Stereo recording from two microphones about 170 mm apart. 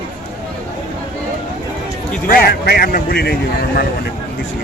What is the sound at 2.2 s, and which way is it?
Speech, 60° left (ahead or behind).